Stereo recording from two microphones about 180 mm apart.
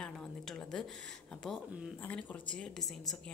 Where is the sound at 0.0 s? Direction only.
5° left (ahead or behind).